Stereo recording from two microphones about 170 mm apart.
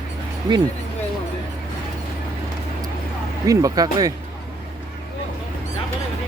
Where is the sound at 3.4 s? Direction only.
20° right (ahead or behind).